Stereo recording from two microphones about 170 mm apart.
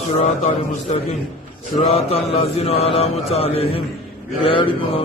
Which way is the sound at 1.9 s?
35° left (ahead or behind).